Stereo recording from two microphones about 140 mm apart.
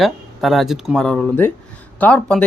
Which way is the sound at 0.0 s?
Centre (ahead or behind).